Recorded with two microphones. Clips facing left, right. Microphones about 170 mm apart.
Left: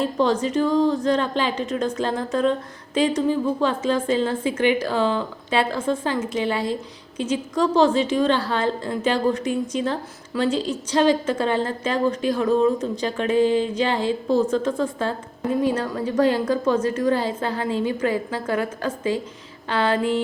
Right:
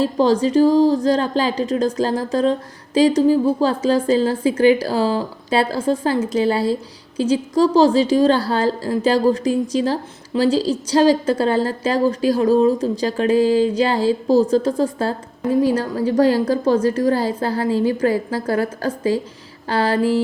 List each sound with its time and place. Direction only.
0.0 s a woman's voice: 35° right (ahead or behind)